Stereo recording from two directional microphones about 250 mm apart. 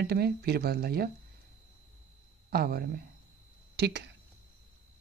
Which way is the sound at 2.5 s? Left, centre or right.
Right.